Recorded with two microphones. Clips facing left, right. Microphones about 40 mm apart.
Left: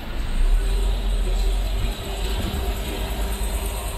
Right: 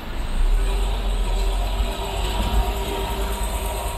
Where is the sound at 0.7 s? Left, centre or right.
Right.